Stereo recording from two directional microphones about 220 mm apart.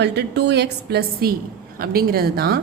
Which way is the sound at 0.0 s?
50° right (ahead or behind).